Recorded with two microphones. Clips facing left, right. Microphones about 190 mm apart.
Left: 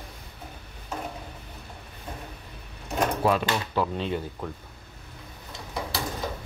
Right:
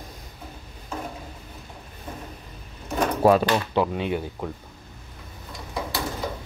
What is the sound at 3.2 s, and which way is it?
Speech, 40° right (ahead or behind).